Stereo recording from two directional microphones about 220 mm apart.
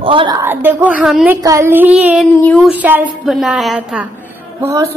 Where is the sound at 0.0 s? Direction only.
20° right (ahead or behind).